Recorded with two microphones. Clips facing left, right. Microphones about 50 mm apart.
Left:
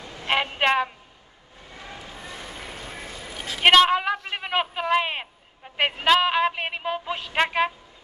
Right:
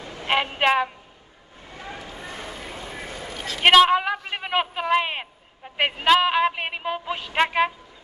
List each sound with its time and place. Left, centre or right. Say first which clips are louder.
0.0 s a sound: right 2 dB; right
0.3 s a woman's voice: right 1 dB; centre
1.8 s vehicle: right 3 dB; right
2.2 s vehicle: right 1 dB; right
3.3 s a woman's voice: even; centre